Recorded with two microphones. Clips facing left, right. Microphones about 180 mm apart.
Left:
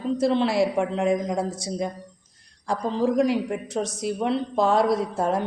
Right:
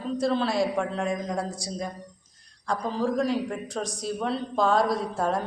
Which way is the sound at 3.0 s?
15° left (ahead or behind).